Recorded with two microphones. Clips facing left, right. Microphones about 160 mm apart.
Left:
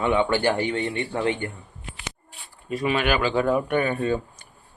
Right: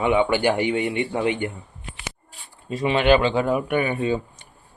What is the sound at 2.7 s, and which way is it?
Speech, 25° right (ahead or behind).